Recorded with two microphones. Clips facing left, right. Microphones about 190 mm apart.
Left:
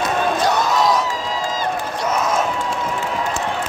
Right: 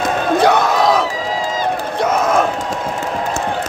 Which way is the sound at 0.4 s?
60° right (ahead or behind).